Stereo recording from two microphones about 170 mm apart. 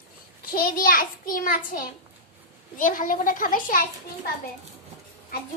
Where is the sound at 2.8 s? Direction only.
50° left (ahead or behind).